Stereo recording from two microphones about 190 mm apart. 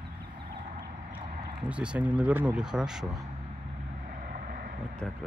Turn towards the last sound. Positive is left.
turn(degrees=-45)  # may be behind; listen again after turning